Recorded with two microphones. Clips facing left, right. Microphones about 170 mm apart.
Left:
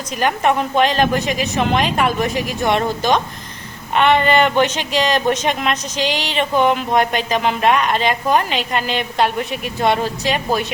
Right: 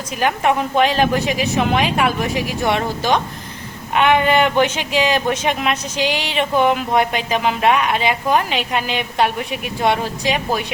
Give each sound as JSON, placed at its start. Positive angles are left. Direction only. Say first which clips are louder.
{"t": 0.2, "sound": "speech", "louder": "even", "side_deg": -5}